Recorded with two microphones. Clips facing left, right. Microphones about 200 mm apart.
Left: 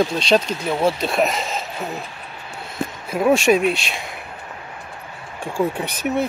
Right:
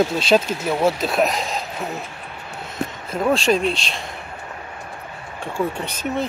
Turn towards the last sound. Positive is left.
turn(degrees=15)  # may be behind; listen again after turning